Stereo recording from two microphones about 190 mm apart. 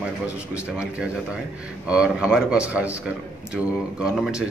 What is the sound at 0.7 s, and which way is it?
A man's voice, 5° right (ahead or behind).